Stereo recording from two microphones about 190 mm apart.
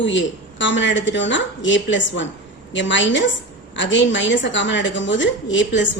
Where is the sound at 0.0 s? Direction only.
75° left (ahead or behind).